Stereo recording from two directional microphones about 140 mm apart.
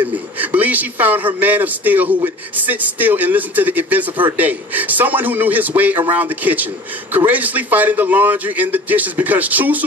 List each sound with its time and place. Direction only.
0.4 s a man's voice: 10° right (ahead or behind)